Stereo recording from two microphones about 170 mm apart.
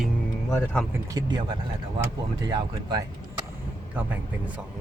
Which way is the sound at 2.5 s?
25° right (ahead or behind).